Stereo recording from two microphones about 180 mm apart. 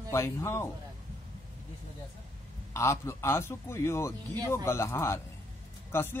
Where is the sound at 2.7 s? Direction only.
15° left (ahead or behind).